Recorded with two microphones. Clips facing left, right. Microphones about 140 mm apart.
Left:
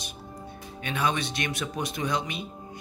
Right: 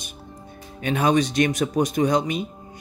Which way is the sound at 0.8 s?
40° right (ahead or behind).